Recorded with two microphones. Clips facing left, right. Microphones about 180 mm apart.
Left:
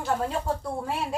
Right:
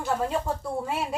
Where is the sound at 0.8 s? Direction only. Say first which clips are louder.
Even; centre (ahead or behind).